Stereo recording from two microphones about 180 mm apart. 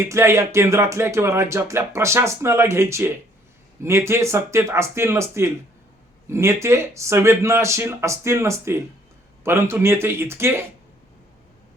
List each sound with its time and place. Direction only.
0.0 s speech: 15° right (ahead or behind)